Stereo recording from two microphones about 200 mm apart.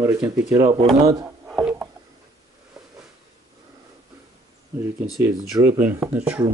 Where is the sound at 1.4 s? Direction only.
5° right (ahead or behind).